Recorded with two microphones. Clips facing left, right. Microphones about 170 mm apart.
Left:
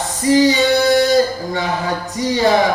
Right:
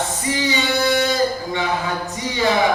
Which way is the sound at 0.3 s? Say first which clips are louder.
Left 11 dB; 40° left (ahead or behind).